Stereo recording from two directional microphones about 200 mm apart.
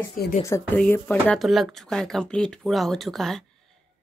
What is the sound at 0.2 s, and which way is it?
Speech, 45° left (ahead or behind).